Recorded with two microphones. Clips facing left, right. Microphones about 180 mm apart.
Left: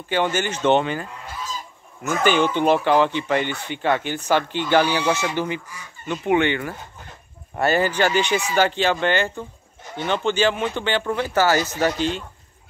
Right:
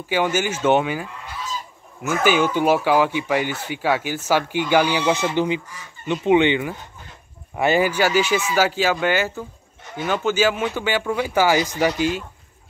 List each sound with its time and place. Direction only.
0.1 s speech: 10° right (ahead or behind)
2.2 s speech: 5° right (ahead or behind)